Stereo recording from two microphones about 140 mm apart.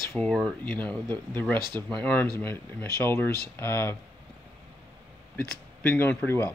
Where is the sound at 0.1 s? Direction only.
5° left (ahead or behind).